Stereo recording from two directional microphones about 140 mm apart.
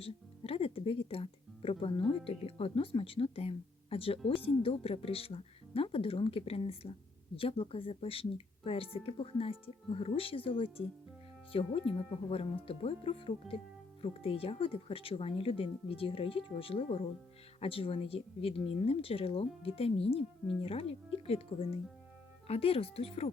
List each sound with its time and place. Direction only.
0.0 s a woman's voice: 45° left (ahead or behind)
11.5 s a woman's voice: 40° left (ahead or behind)